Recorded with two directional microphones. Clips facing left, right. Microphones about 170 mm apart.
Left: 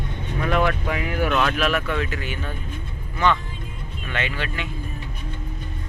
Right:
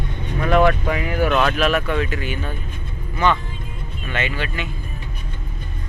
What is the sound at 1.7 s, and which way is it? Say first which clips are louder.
Speech: right 3 dB; 20° right (ahead or behind).